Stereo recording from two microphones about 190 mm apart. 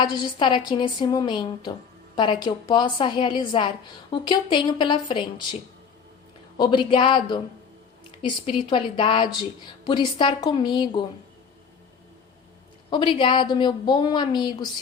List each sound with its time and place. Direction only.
0.0 s a woman's voice: 25° left (ahead or behind)
6.6 s a woman's voice: 25° left (ahead or behind)
12.9 s a woman's voice: 25° left (ahead or behind)